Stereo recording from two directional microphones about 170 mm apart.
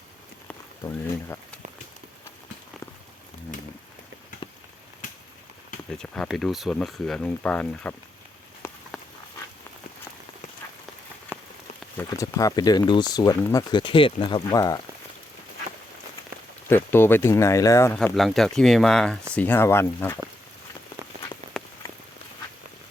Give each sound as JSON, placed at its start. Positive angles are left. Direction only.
{"t": 0.4, "sound": "a sound", "side_deg": 10}
{"t": 4.4, "sound": "rain on surface", "side_deg": 30}
{"t": 6.0, "sound": "speech", "side_deg": 0}
{"t": 8.6, "sound": "a sound", "side_deg": 15}
{"t": 11.3, "sound": "rain on surface", "side_deg": -15}
{"t": 11.9, "sound": "speech", "side_deg": 20}
{"t": 14.5, "sound": "speech", "side_deg": 20}
{"t": 16.6, "sound": "speech", "side_deg": 15}
{"t": 17.9, "sound": "speech", "side_deg": 0}
{"t": 21.5, "sound": "rain on surface", "side_deg": 5}